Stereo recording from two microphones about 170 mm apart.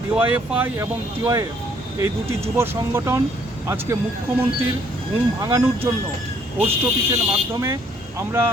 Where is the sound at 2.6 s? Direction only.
15° right (ahead or behind).